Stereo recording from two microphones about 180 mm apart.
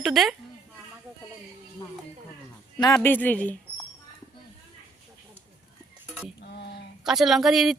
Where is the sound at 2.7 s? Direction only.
20° left (ahead or behind).